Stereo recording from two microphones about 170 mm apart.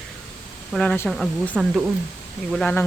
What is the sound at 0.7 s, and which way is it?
Speech, 5° left (ahead or behind).